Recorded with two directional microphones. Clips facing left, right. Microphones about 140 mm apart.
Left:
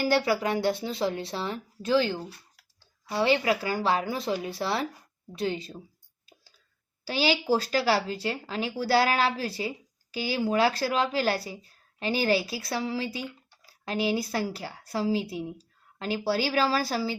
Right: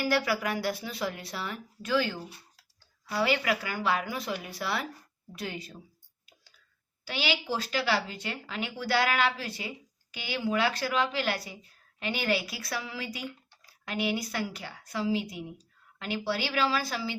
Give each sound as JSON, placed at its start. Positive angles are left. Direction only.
{"t": 0.0, "sound": "speech", "side_deg": 30}
{"t": 7.0, "sound": "a woman's voice", "side_deg": 35}